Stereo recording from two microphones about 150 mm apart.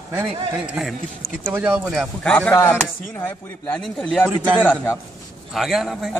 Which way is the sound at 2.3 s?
15° left (ahead or behind).